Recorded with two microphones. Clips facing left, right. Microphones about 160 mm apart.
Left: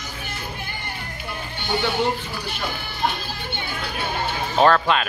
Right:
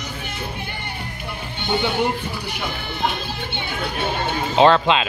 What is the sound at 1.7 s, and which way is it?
Speech, 20° right (ahead or behind).